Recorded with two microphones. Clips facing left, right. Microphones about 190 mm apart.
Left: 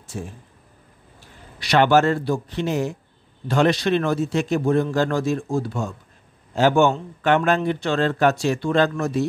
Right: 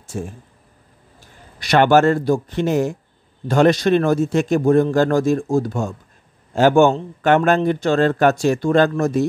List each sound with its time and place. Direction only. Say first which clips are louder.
0.1 s a man's voice: right 5 dB; 45° right (ahead or behind)
1.6 s a man's voice: right 3 dB; 50° right (ahead or behind)